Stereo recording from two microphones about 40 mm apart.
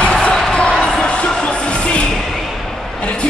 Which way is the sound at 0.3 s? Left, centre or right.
Centre.